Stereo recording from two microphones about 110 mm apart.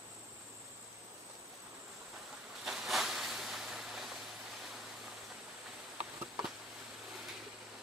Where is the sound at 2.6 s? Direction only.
5° right (ahead or behind).